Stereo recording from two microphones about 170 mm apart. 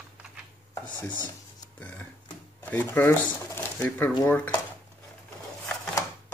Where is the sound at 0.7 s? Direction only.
20° left (ahead or behind).